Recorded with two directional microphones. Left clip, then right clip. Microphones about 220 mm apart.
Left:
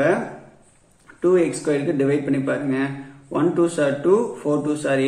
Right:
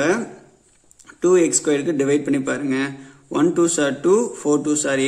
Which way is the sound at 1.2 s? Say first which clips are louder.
Right 2 dB; 50° right (ahead or behind).